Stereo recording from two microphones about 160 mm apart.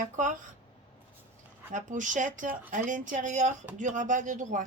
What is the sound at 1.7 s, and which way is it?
A woman's voice, 50° right (ahead or behind).